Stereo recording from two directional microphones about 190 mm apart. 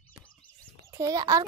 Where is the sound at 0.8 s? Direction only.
15° right (ahead or behind).